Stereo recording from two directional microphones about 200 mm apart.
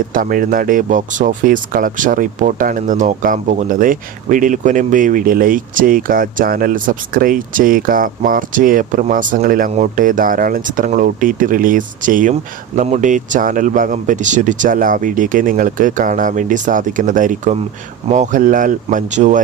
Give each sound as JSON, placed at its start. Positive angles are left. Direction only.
{"t": 0.1, "sound": "speech", "side_deg": -45}